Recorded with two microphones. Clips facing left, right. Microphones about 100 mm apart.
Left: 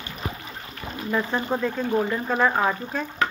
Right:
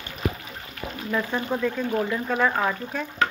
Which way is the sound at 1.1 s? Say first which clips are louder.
Left 2 dB; 15° left (ahead or behind).